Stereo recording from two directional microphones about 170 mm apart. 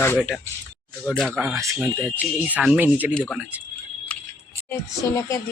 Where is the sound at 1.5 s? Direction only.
20° right (ahead or behind).